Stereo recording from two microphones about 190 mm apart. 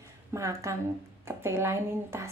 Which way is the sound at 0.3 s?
15° right (ahead or behind).